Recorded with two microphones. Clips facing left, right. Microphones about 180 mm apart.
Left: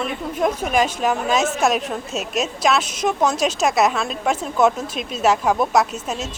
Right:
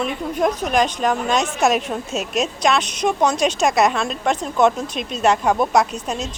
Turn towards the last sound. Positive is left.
turn(degrees=5)  # may be behind; listen again after turning